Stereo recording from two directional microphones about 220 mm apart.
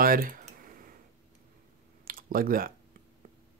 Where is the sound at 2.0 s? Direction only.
40° right (ahead or behind).